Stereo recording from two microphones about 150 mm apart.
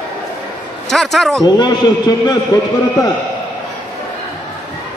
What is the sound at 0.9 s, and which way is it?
Speech, centre (ahead or behind).